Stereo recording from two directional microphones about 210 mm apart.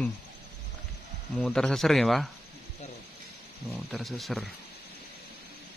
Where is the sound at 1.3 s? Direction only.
Centre (ahead or behind).